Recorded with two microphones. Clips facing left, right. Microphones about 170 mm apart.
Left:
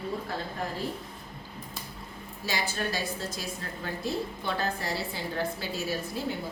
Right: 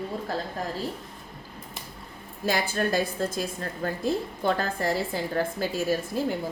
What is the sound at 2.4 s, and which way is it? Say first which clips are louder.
A woman's voice: right 6 dB; 55° right (ahead or behind).